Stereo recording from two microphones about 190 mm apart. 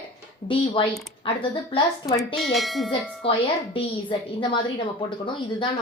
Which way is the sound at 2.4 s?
Centre (ahead or behind).